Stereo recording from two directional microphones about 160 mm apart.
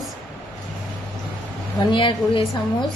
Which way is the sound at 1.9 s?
35° left (ahead or behind).